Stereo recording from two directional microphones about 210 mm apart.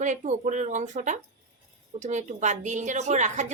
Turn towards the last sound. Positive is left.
turn(degrees=-35)  # may be behind; listen again after turning